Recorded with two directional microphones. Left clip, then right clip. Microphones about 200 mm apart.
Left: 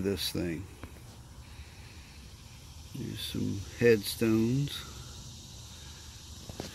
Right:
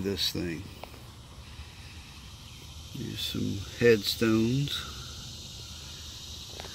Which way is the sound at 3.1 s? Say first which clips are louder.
Right 4 dB; 10° left (ahead or behind).